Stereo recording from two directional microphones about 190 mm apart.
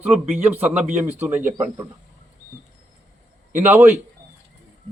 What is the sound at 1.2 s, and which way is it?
Speech, 10° right (ahead or behind).